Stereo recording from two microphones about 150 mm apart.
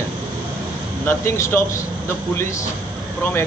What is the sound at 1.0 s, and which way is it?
Speech, 15° left (ahead or behind).